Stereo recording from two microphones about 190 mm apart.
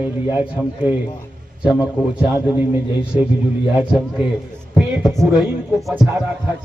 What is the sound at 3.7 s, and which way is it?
Speech, 5° right (ahead or behind).